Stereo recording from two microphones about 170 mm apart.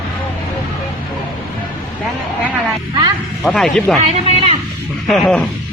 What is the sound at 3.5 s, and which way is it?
Speech, 5° left (ahead or behind).